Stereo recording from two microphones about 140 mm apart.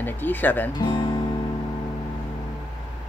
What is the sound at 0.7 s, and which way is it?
Speech, 30° left (ahead or behind).